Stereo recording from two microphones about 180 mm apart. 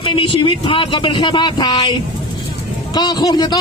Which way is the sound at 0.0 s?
30° left (ahead or behind).